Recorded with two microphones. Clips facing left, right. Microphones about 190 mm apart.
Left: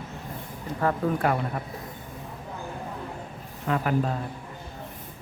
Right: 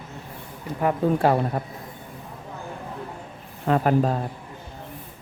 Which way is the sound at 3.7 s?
35° right (ahead or behind).